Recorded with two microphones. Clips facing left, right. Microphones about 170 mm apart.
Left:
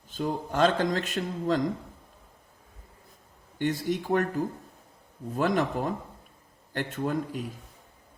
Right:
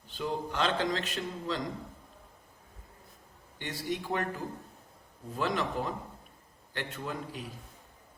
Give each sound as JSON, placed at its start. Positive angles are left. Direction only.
{"t": 0.1, "sound": "a man's voice", "side_deg": 45}
{"t": 3.6, "sound": "a man's voice", "side_deg": 45}
{"t": 5.4, "sound": "a man's voice", "side_deg": 50}